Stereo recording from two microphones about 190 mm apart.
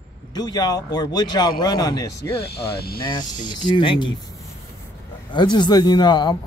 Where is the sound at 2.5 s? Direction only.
55° left (ahead or behind).